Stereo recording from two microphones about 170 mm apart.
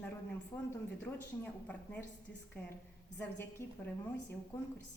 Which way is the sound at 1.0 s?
10° left (ahead or behind).